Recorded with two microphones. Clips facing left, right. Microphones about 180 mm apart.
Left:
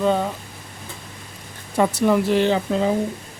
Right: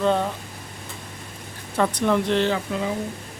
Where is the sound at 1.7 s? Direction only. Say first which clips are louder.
Left 3 dB; 10° left (ahead or behind).